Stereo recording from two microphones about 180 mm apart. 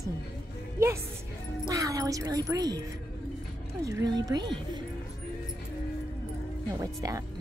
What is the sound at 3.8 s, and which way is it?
Speech, 20° right (ahead or behind).